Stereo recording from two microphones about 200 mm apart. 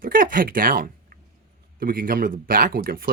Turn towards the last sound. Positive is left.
turn(degrees=-45)  # may be behind; listen again after turning